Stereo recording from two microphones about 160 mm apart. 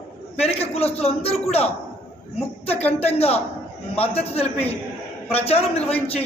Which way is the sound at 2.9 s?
40° left (ahead or behind).